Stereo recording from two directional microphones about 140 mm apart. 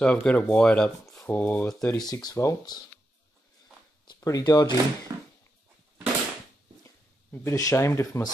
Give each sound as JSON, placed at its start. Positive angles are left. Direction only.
{"t": 0.0, "sound": "speech", "side_deg": 10}
{"t": 1.9, "sound": "speech", "side_deg": 30}
{"t": 4.1, "sound": "speech", "side_deg": 25}
{"t": 5.1, "sound": "a sound", "side_deg": -25}
{"t": 7.4, "sound": "speech", "side_deg": 20}